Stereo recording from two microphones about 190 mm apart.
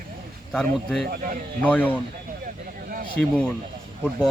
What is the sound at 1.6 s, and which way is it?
Speech, 10° left (ahead or behind).